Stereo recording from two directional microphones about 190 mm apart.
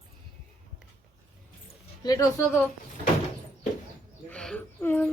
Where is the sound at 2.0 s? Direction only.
20° left (ahead or behind).